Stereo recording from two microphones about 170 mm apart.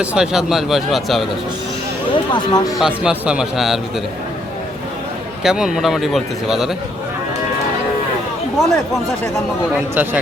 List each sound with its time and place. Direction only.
0.0 s a man's voice: 5° right (ahead or behind)
2.3 s speech: 25° left (ahead or behind)
2.7 s a man's voice: 5° right (ahead or behind)
5.4 s a man's voice: 5° right (ahead or behind)
8.5 s a man's voice: centre (ahead or behind)
9.9 s speech: 10° right (ahead or behind)